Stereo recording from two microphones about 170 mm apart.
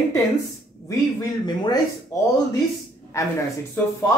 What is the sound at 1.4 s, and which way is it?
Speech, 25° left (ahead or behind).